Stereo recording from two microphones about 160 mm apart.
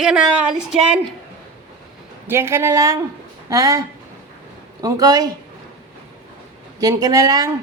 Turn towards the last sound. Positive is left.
turn(degrees=-25)  # may be behind; listen again after turning